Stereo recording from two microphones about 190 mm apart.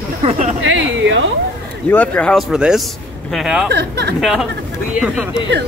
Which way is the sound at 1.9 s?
10° left (ahead or behind).